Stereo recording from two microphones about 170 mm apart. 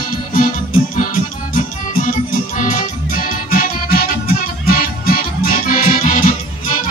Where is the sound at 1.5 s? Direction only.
50° left (ahead or behind).